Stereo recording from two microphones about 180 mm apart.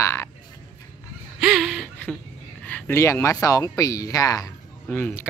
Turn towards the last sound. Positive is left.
turn(degrees=10)  # may be behind; listen again after turning